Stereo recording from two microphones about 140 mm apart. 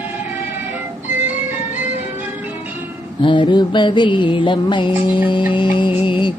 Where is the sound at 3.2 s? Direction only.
35° left (ahead or behind).